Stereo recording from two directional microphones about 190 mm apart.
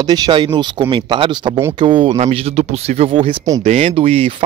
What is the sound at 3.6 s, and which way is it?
Speech, 35° right (ahead or behind).